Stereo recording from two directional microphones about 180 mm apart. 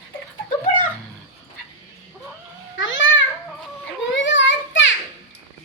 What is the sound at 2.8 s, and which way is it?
Babbling, 90° left.